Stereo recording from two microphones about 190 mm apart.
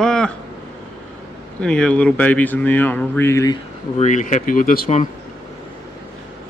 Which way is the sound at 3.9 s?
40° left (ahead or behind).